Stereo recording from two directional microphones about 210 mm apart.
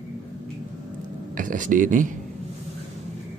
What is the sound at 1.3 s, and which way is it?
Speech, 40° right (ahead or behind).